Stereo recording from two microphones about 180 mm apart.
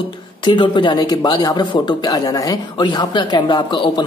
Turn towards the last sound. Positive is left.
turn(degrees=25)  # may be behind; listen again after turning